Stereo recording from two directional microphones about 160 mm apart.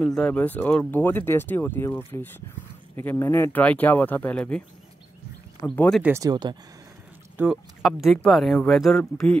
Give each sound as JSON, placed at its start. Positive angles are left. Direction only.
{"t": 0.1, "sound": "speech", "side_deg": 5}
{"t": 6.0, "sound": "speech", "side_deg": -20}
{"t": 7.3, "sound": "speech", "side_deg": -5}